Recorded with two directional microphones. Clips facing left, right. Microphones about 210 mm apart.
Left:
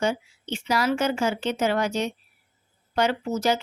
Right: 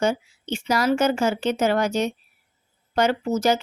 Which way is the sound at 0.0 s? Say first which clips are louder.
Right 3 dB; 45° right (ahead or behind).